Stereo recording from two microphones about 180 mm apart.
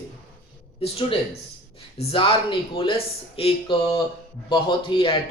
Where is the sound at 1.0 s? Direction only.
35° left (ahead or behind).